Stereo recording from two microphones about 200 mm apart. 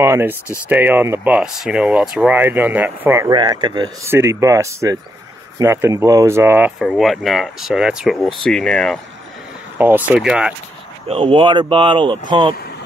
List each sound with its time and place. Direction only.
0.0 s speech: 15° right (ahead or behind); by 9.0 s 5° left (ahead or behind)
9.8 s speech: 10° right (ahead or behind)
11.1 s speech: 25° right (ahead or behind)